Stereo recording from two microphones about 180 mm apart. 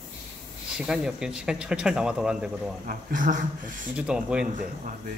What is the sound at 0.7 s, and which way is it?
Speech, 5° right (ahead or behind).